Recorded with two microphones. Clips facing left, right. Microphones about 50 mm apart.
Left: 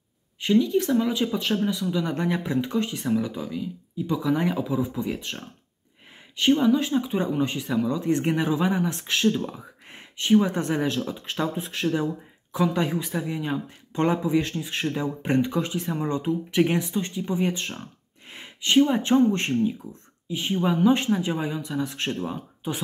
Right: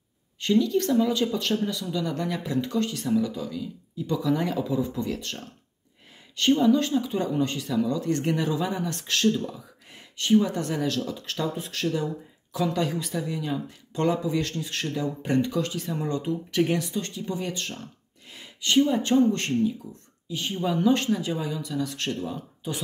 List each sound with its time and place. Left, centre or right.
0.4 s speech: centre
2.0 s speech: left
9.5 s a woman's voice: left